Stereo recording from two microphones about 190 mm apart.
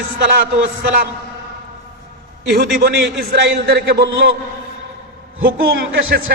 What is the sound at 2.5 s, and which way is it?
A man's voice, 55° right (ahead or behind).